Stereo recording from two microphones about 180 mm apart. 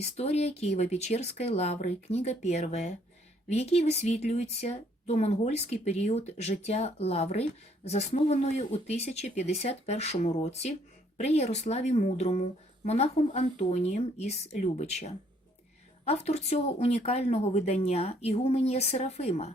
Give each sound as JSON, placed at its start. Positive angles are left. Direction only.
{"t": 0.0, "sound": "speech", "side_deg": 35}